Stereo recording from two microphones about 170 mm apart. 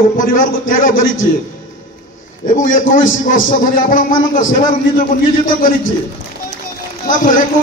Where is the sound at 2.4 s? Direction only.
50° left (ahead or behind).